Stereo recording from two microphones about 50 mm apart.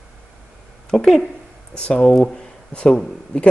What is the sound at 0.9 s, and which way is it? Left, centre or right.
Speech, centre.